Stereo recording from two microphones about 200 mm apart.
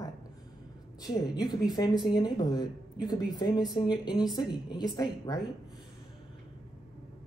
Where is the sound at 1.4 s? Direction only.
20° left (ahead or behind).